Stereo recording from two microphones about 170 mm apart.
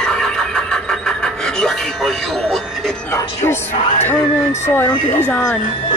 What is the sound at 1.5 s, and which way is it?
Speech, centre (ahead or behind).